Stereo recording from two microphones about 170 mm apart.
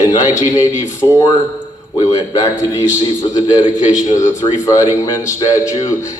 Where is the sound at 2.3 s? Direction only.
20° left (ahead or behind).